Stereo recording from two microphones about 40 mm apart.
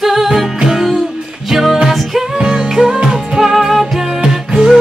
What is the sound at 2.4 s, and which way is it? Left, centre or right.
Music, right.